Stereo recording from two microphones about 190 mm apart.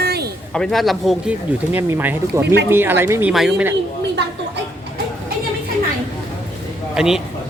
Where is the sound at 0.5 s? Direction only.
Centre (ahead or behind).